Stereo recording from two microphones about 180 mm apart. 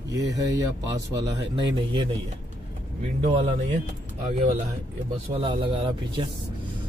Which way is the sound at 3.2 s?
35° right (ahead or behind).